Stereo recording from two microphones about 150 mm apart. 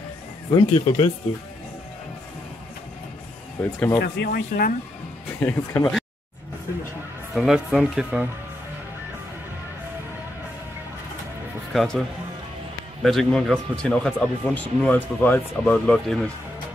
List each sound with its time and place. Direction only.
0.5 s speech: 30° left (ahead or behind)
3.6 s speech: 10° left (ahead or behind)
4.0 s speech: 90° left
5.4 s speech: 15° left (ahead or behind)
7.3 s speech: centre (ahead or behind)
11.7 s speech: centre (ahead or behind)
13.0 s speech: 5° left (ahead or behind)